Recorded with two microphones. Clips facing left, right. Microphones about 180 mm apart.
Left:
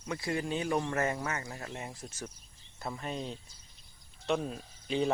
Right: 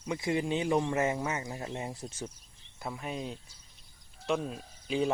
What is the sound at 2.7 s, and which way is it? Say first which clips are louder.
Speech: even; 5° right (ahead or behind).